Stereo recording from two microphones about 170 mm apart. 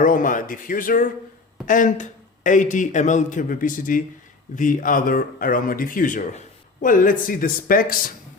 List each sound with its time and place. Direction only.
0.0 s a man's voice: 50° left (ahead or behind)